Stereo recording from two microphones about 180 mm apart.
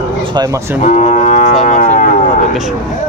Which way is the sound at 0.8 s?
40° left (ahead or behind).